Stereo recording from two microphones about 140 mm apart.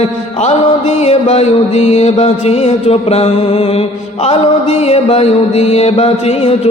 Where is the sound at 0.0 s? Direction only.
50° left (ahead or behind).